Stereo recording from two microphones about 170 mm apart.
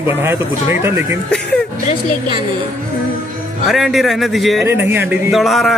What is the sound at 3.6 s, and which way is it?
A man's voice, centre (ahead or behind).